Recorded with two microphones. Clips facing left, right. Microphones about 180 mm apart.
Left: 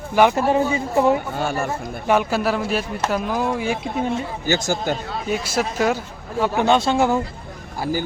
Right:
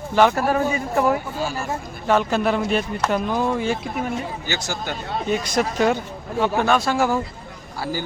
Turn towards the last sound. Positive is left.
turn(degrees=15)  # may be behind; listen again after turning